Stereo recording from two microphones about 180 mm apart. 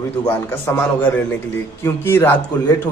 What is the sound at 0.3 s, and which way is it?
A man's voice, 10° left (ahead or behind).